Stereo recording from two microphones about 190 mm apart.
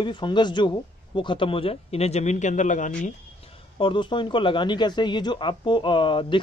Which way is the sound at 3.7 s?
25° left (ahead or behind).